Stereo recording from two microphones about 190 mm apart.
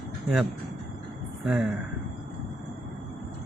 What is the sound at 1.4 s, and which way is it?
Speech, 5° right (ahead or behind).